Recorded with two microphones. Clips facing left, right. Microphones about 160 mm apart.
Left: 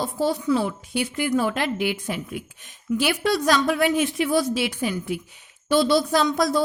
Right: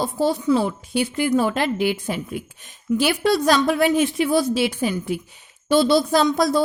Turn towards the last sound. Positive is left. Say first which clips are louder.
# right 3 dB
turn(degrees=-30)  # may be behind; listen again after turning